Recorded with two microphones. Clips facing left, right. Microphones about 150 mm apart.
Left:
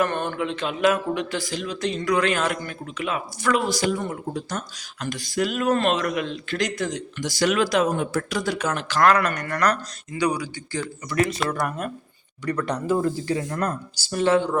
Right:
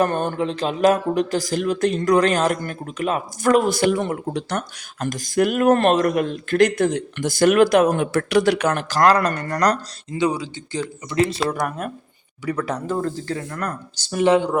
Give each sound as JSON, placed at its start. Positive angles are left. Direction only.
{"t": 0.0, "sound": "speech", "side_deg": -40}
{"t": 4.9, "sound": "speech", "side_deg": -45}
{"t": 8.9, "sound": "speech", "side_deg": -35}
{"t": 12.5, "sound": "speech", "side_deg": -5}
{"t": 13.0, "sound": "speech", "side_deg": 10}
{"t": 14.1, "sound": "speech", "side_deg": -15}